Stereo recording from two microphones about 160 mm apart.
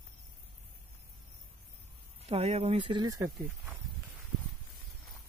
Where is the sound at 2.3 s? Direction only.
40° right (ahead or behind).